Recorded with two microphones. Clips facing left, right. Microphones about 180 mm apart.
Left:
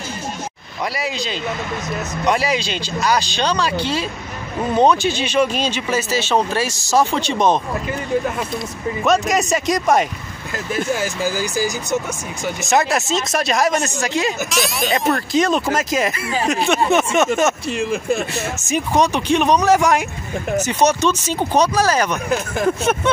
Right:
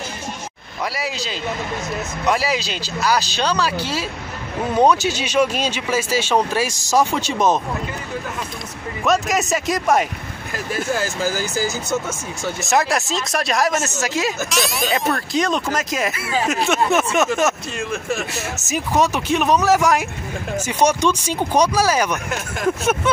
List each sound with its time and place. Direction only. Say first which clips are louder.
0.9 s speech: left 2 dB; centre (ahead or behind)
9.0 s speech: left 2 dB; centre (ahead or behind)
10.7 s speech: left 2 dB; 20° left (ahead or behind)
12.4 s speech: left 1 dB; centre (ahead or behind)
18.3 s speech: left 3 dB; 5° right (ahead or behind)